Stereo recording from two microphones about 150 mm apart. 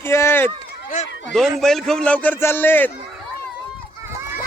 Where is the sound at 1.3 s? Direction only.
Centre (ahead or behind).